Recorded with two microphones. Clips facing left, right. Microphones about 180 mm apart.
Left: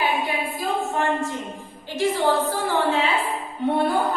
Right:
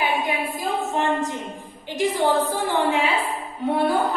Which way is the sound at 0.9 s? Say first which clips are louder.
Right 1 dB; 20° right (ahead or behind).